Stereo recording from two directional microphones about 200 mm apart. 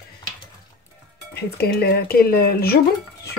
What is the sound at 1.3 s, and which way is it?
Speech, 55° left (ahead or behind).